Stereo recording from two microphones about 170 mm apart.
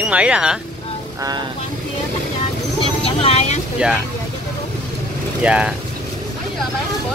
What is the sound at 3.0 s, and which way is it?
Speech, 35° left (ahead or behind).